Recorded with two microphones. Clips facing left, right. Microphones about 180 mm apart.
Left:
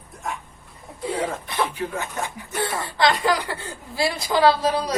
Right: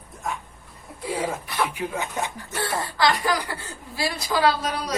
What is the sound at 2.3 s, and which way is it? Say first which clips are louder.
Speech: left 1 dB; 20° left (ahead or behind).